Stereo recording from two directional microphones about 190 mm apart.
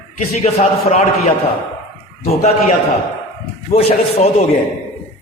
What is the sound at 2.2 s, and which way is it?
Speech, 35° left (ahead or behind).